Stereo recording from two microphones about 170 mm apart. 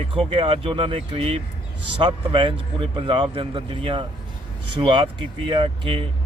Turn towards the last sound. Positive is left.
turn(degrees=-30)  # may be behind; listen again after turning